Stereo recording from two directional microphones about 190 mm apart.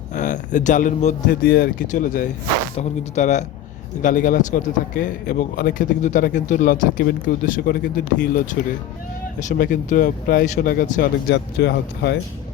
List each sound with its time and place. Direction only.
0.1 s speech: 40° left (ahead or behind); by 12.2 s 60° left (ahead or behind)